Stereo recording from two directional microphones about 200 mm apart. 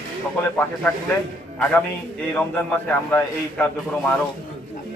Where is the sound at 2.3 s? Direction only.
10° left (ahead or behind).